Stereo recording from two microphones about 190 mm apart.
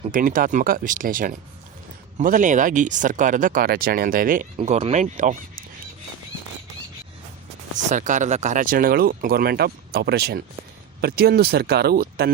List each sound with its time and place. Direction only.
0.1 s speech: 45° right (ahead or behind)
4.5 s speech: 35° right (ahead or behind)
7.9 s speech: 40° right (ahead or behind)